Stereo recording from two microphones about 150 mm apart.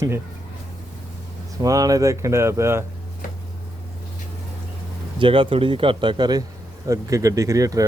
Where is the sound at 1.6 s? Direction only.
25° right (ahead or behind).